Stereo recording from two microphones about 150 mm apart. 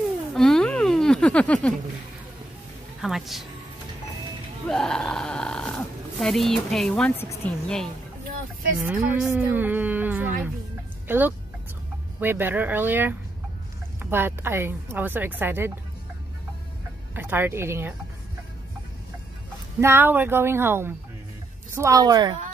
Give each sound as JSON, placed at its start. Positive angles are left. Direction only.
{"t": 0.3, "sound": "a sound", "side_deg": 5}
{"t": 3.0, "sound": "speech", "side_deg": 0}
{"t": 4.6, "sound": "speech", "side_deg": 5}
{"t": 8.8, "sound": "a woman's voice", "side_deg": -10}
{"t": 14.1, "sound": "a woman's voice", "side_deg": -15}
{"t": 17.1, "sound": "a woman's voice", "side_deg": -15}
{"t": 19.8, "sound": "a woman's voice", "side_deg": -15}